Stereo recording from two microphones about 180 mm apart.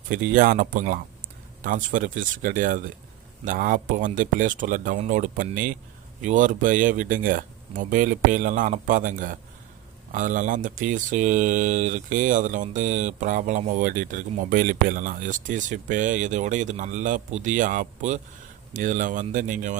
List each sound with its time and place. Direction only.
0.1 s speech: 50° right (ahead or behind)